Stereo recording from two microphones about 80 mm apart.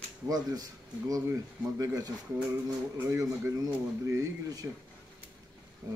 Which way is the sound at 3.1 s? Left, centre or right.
Right.